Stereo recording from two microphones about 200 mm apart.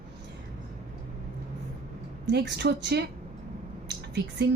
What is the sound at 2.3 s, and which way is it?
Speech, 55° right (ahead or behind).